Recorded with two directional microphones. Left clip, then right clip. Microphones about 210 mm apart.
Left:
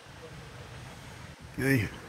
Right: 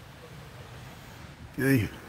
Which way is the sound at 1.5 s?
20° right (ahead or behind).